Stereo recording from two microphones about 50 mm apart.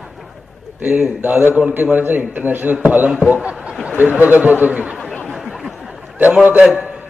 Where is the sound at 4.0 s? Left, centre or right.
Right.